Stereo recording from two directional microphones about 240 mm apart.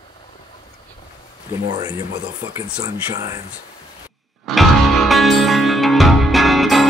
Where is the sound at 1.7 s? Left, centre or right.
Centre.